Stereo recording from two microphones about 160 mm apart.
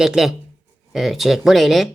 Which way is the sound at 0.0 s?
Centre (ahead or behind).